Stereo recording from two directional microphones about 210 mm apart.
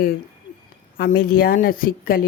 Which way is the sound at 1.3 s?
45° left (ahead or behind).